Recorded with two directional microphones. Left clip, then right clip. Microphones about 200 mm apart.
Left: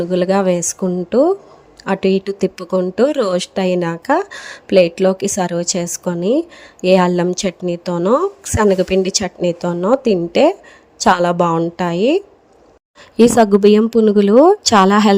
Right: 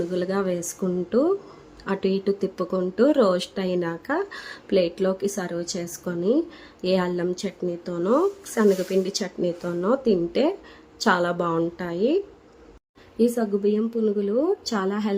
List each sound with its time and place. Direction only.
0.1 s speech: 35° left (ahead or behind)
13.1 s speech: 50° left (ahead or behind)